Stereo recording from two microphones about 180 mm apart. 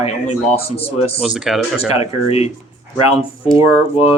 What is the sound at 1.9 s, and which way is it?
Speech, 35° left (ahead or behind).